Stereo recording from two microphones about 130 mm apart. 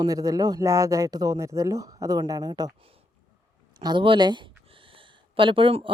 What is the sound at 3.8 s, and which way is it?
Speech, 35° right (ahead or behind).